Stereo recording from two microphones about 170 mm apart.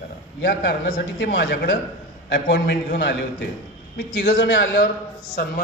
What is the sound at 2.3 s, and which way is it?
Speech, 85° left.